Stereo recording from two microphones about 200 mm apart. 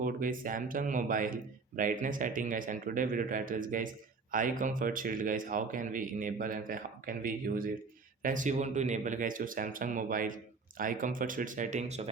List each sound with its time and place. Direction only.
0.0 s a man's voice: 45° right (ahead or behind)